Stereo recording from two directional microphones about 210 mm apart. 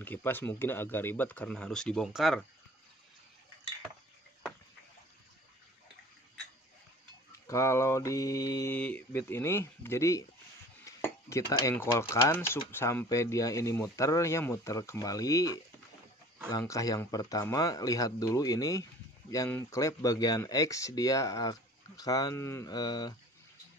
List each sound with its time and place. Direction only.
0.0 s dishes: 10° left (ahead or behind)
7.3 s dishes: 15° left (ahead or behind)